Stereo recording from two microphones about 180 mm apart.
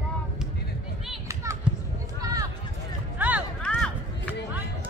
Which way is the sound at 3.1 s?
10° right (ahead or behind).